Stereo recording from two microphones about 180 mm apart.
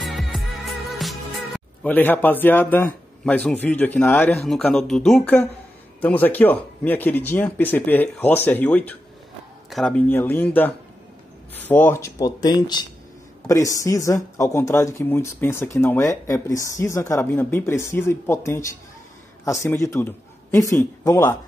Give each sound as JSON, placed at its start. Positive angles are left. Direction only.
{"t": 0.0, "sound": "speech", "side_deg": 0}